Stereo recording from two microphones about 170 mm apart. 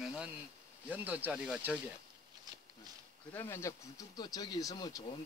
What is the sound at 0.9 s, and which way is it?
Speech, 10° right (ahead or behind).